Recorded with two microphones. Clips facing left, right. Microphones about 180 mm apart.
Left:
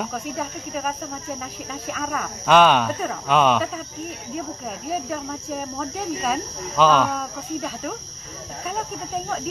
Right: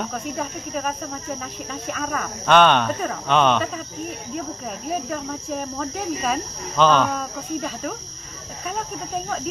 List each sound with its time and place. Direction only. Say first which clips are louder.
0.0 s speech: even; 5° left (ahead or behind)